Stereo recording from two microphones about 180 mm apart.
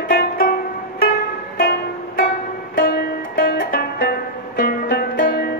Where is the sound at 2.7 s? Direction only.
55° left (ahead or behind).